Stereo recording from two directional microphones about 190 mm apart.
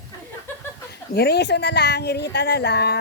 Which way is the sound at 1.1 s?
60° left (ahead or behind).